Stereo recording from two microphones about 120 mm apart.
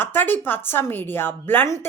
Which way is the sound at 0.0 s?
15° left (ahead or behind).